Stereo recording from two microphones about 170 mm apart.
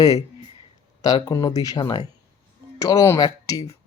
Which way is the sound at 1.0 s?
20° left (ahead or behind).